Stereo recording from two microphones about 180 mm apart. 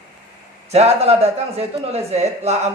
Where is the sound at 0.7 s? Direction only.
35° right (ahead or behind).